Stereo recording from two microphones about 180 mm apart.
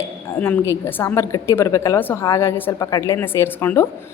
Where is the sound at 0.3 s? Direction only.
10° left (ahead or behind).